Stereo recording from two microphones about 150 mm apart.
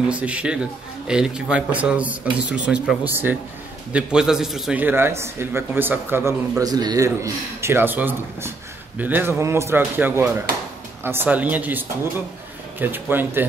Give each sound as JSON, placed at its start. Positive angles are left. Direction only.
{"t": 0.1, "sound": "a man's voice", "side_deg": -10}
{"t": 6.6, "sound": "a man's voice", "side_deg": -25}